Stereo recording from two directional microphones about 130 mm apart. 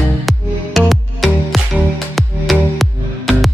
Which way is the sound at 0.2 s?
Centre (ahead or behind).